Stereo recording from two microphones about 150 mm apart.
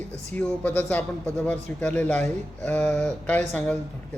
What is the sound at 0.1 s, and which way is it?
A man's voice, 10° left (ahead or behind).